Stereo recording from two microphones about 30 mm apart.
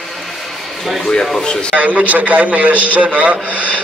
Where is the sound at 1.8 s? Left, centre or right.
Right.